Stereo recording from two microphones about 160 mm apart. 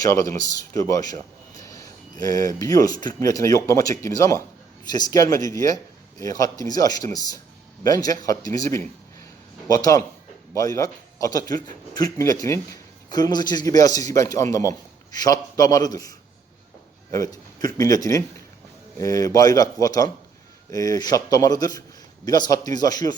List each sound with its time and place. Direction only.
0.0 s speech: 20° left (ahead or behind)